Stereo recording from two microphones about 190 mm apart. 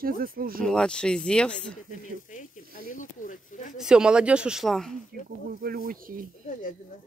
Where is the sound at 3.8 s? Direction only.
5° right (ahead or behind).